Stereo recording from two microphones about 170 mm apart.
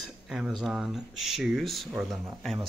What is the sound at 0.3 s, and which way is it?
Speech, centre (ahead or behind).